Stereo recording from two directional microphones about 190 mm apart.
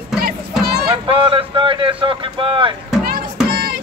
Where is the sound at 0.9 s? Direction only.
25° right (ahead or behind).